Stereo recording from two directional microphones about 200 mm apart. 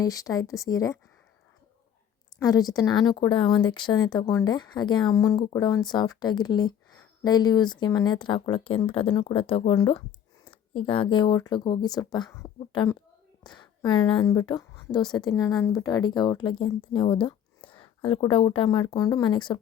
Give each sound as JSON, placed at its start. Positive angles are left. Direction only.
{"t": 0.0, "sound": "speech", "side_deg": 15}
{"t": 2.3, "sound": "a woman's voice", "side_deg": 20}